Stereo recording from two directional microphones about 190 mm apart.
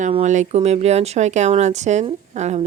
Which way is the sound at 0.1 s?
35° right (ahead or behind).